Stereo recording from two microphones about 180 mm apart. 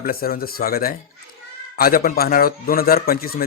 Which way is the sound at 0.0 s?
55° left (ahead or behind).